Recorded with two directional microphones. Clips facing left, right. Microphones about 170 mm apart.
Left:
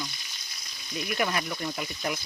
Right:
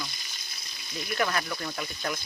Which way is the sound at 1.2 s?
10° left (ahead or behind).